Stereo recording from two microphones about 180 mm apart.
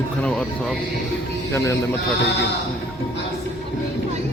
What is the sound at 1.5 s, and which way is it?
Speech, 15° left (ahead or behind).